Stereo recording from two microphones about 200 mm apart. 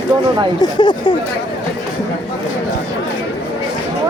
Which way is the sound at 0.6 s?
20° left (ahead or behind).